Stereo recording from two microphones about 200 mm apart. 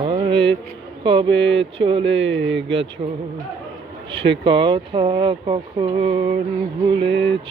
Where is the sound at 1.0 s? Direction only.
25° right (ahead or behind).